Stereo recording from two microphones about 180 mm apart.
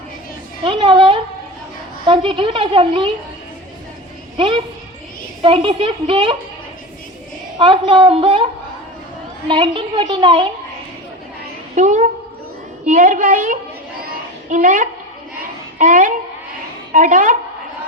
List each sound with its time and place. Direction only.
0.6 s a sound: 30° right (ahead or behind)
2.0 s a woman's voice: 30° right (ahead or behind)
4.4 s a child's voice: 30° right (ahead or behind)
7.6 s a woman's voice: 25° right (ahead or behind)
9.5 s a woman's voice: 25° right (ahead or behind)
11.7 s a woman's voice: 40° right (ahead or behind)
14.0 s child singing: 50° right (ahead or behind)
15.8 s a woman's voice: 45° right (ahead or behind)